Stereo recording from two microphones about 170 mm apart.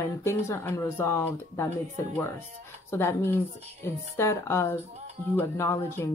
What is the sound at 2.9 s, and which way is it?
Speech, 15° left (ahead or behind).